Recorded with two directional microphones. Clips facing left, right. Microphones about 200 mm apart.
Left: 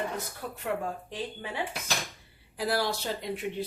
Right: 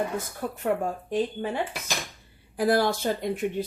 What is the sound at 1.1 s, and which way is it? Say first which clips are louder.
Speech: right 10 dB; 50° right (ahead or behind).